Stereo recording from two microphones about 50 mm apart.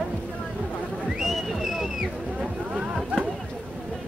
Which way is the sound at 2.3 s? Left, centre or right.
Right.